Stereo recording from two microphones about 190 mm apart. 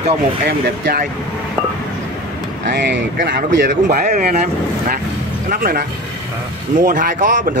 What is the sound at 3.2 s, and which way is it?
Speech, 45° right (ahead or behind).